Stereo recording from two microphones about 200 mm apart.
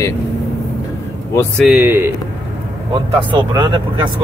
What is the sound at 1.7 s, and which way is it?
Speech, 10° right (ahead or behind).